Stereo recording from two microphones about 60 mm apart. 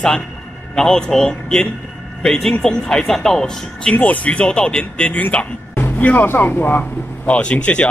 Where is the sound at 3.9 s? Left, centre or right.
Left.